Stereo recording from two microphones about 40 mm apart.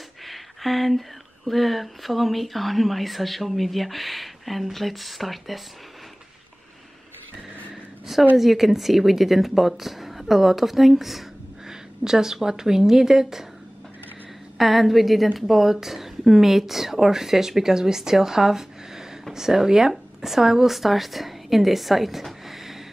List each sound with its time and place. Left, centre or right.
0.2 s speech: centre
8.4 s a woman's voice: centre
14.6 s a woman's voice: centre